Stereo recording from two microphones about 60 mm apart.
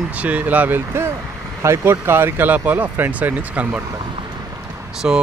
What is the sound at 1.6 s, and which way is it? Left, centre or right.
Speech, right.